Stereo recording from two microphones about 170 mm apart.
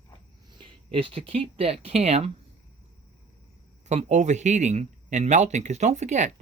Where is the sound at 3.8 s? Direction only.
45° right (ahead or behind).